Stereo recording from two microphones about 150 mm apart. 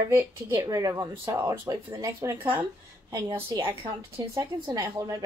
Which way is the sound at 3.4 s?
15° right (ahead or behind).